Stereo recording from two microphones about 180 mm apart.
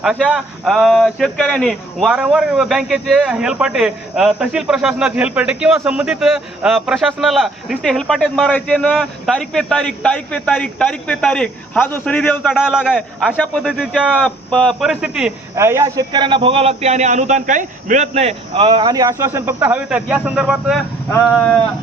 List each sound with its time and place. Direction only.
0.3 s speech: 5° right (ahead or behind)
15.5 s a man's voice: 15° right (ahead or behind); by 21.6 s 5° left (ahead or behind)